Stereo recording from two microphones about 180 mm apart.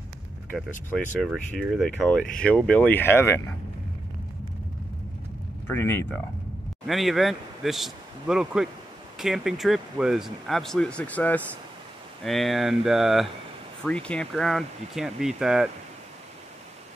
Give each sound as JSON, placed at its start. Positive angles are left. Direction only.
{"t": 0.5, "sound": "speech", "side_deg": 5}
{"t": 5.7, "sound": "speech", "side_deg": 15}
{"t": 6.9, "sound": "speech", "side_deg": 0}